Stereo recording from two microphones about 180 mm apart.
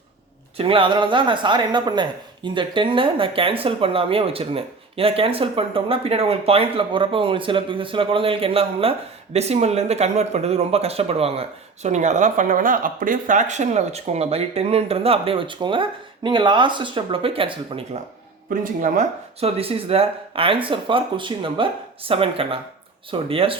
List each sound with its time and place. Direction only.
0.5 s speech: 30° right (ahead or behind)
18.6 s speech: 45° right (ahead or behind)